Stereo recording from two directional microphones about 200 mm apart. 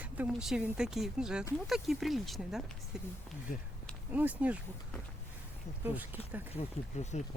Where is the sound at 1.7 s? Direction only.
Centre (ahead or behind).